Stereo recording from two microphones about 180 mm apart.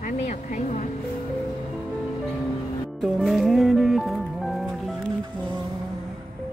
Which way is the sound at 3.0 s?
Centre (ahead or behind).